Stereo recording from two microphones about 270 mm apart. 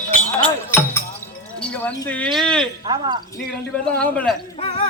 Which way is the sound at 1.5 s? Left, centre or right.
Centre.